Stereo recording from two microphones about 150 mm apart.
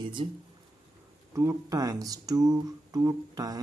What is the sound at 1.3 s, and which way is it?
Speech, 20° right (ahead or behind).